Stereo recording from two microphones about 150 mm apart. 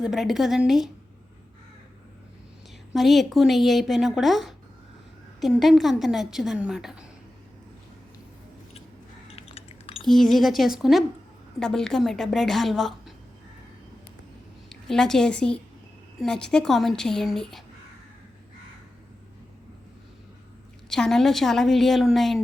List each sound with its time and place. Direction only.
0.0 s a woman's voice: centre (ahead or behind)
2.9 s a woman's voice: centre (ahead or behind)
9.2 s a sound: 40° left (ahead or behind)
10.1 s a woman's voice: centre (ahead or behind)
14.7 s a woman's voice: 5° left (ahead or behind)
20.9 s a woman's voice: 5° left (ahead or behind)